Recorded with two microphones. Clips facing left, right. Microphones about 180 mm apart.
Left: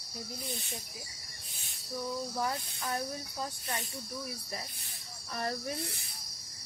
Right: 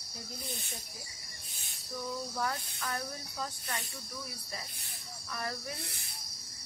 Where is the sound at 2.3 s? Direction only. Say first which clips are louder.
Left 1 dB; 20° left (ahead or behind).